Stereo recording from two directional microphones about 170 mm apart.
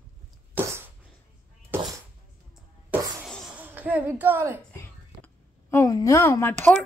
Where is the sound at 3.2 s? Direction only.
Centre (ahead or behind).